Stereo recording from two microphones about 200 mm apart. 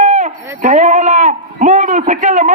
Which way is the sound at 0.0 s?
35° right (ahead or behind).